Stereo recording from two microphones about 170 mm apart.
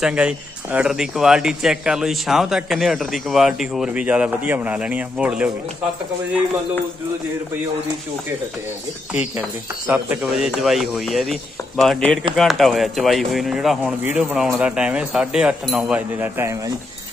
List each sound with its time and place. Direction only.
0.0 s speech: 5° right (ahead or behind)
9.8 s speech: 10° right (ahead or behind)
16.2 s a man's voice: 15° right (ahead or behind)